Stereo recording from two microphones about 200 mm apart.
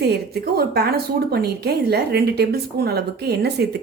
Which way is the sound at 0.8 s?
50° right (ahead or behind).